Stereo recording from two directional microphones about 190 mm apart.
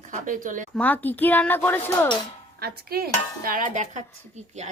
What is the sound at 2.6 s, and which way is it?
Dishes, 55° right (ahead or behind).